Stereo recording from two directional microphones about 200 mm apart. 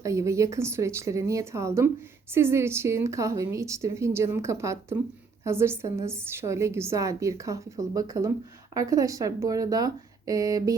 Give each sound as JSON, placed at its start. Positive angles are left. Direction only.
{"t": 0.0, "sound": "a woman's voice", "side_deg": -15}